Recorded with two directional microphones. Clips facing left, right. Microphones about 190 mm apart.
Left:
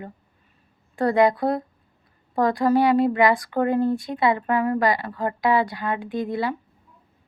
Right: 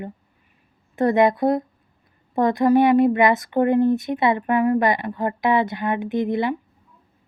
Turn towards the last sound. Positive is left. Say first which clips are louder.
# right 4 dB
turn(degrees=-20)  # may be behind; listen again after turning